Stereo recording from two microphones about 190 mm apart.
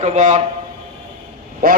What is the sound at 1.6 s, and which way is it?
Speech, 50° right (ahead or behind).